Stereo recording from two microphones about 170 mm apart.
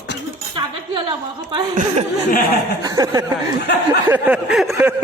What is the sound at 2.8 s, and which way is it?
Chuckle, 20° right (ahead or behind).